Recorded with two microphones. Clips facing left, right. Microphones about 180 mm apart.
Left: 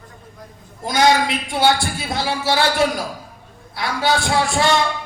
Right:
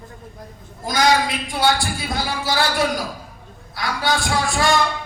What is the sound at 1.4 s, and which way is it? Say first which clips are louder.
A man's voice: left 3 dB; 25° left (ahead or behind).